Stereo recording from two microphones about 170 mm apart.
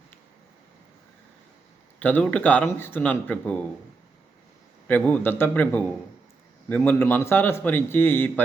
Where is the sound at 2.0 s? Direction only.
10° left (ahead or behind).